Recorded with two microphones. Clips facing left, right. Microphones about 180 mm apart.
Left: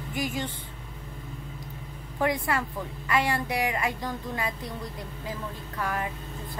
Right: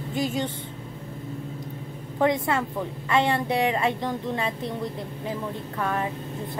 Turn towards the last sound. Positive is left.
turn(degrees=-25)  # may be behind; listen again after turning